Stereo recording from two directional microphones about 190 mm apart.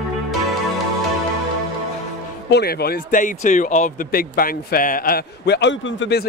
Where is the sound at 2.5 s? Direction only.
55° left (ahead or behind).